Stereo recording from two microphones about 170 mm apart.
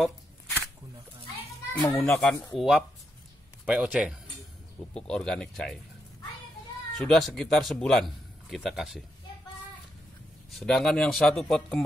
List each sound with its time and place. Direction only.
0.0 s shuffling cards: 10° left (ahead or behind)
1.7 s a child's voice: 15° left (ahead or behind)
2.0 s a man's voice: centre (ahead or behind)
4.9 s a man's voice: 5° left (ahead or behind)
7.0 s a man's voice: 5° left (ahead or behind)
10.5 s a man's voice: centre (ahead or behind)